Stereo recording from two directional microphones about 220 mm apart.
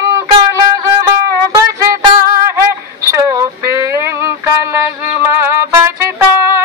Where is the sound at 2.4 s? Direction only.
10° right (ahead or behind).